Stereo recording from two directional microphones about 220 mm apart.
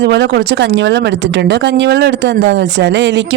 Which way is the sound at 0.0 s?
50° right (ahead or behind).